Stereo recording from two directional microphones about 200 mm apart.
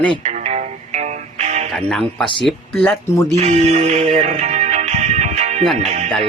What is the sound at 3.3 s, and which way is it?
Speech, 35° right (ahead or behind).